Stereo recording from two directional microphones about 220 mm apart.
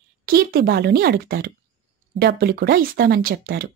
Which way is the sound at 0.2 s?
40° right (ahead or behind).